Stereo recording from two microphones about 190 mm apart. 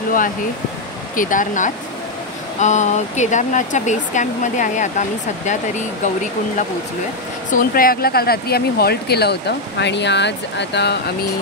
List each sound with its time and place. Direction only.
1.1 s speech: 45° left (ahead or behind)
7.5 s speech: 50° left (ahead or behind)